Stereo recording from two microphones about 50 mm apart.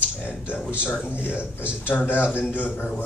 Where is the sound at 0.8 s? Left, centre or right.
Left.